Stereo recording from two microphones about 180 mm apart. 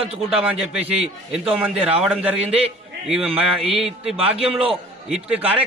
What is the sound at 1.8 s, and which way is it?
Speech, 5° right (ahead or behind).